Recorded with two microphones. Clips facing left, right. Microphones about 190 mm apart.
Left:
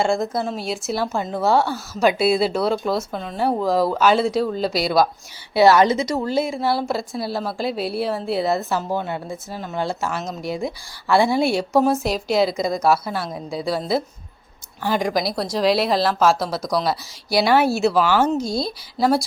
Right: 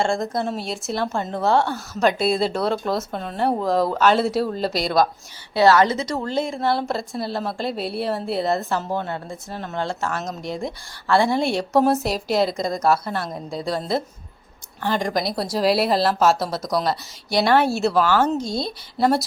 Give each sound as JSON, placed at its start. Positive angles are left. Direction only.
{"t": 0.0, "sound": "a woman's voice", "side_deg": 5}
{"t": 5.5, "sound": "a woman's voice", "side_deg": 15}